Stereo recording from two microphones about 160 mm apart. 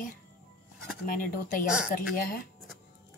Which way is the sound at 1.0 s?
60° left (ahead or behind).